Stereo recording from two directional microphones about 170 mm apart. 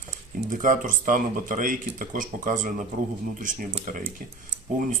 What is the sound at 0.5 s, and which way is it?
Speech, 50° right (ahead or behind).